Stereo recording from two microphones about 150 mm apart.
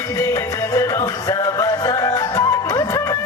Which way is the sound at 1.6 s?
20° left (ahead or behind).